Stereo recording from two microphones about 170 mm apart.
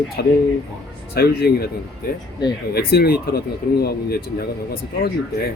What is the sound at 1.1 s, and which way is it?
Speech, 65° left (ahead or behind).